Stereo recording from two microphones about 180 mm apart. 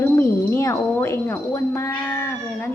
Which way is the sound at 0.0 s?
15° left (ahead or behind).